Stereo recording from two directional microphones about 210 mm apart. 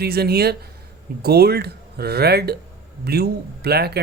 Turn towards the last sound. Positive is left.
turn(degrees=-50)  # may be behind; listen again after turning